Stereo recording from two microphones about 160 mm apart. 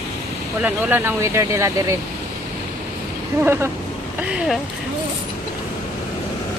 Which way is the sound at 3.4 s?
15° right (ahead or behind).